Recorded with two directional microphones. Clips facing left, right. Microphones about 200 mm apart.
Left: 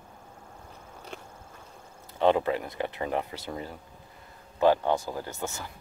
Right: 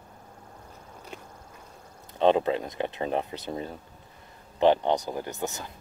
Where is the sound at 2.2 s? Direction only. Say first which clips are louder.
Right 2 dB; 20° right (ahead or behind).